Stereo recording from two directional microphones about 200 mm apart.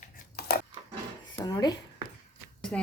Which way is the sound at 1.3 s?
20° left (ahead or behind).